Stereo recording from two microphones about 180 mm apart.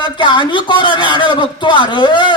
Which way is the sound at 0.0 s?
25° left (ahead or behind).